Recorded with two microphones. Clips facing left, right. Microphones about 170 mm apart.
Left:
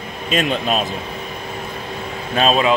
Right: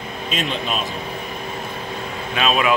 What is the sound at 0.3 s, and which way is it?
Speech, 45° left (ahead or behind).